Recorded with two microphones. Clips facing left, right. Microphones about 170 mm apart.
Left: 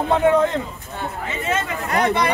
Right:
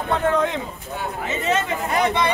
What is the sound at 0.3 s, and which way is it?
Speech, 5° left (ahead or behind).